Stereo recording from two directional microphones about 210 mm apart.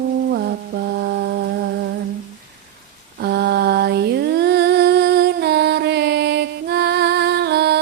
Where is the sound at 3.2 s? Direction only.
50° right (ahead or behind).